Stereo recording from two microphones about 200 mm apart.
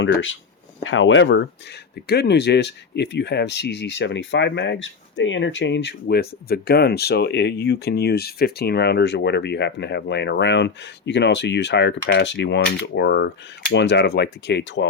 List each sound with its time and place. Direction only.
0.0 s speech: 75° left (ahead or behind)
2.0 s speech: 55° left (ahead or behind)